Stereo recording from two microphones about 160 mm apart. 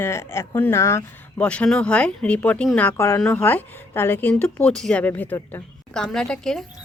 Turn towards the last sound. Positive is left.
turn(degrees=5)  # may be behind; listen again after turning